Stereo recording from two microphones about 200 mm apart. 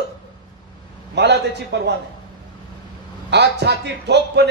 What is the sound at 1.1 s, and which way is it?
Speech, 60° right (ahead or behind).